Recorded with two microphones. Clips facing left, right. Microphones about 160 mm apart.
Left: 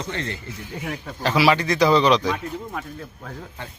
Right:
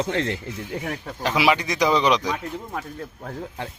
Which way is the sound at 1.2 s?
15° right (ahead or behind).